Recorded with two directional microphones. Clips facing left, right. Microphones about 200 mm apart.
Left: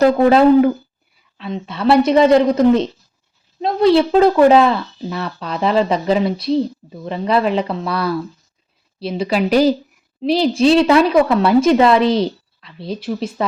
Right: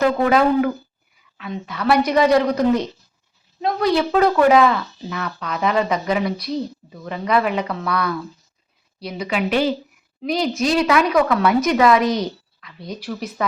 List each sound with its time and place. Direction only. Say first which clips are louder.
0.0 s speech: left 6 dB; 30° left (ahead or behind)